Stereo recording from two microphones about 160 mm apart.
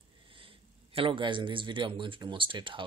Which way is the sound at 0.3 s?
35° right (ahead or behind).